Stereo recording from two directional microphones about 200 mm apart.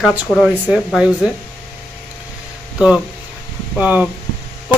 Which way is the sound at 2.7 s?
5° right (ahead or behind).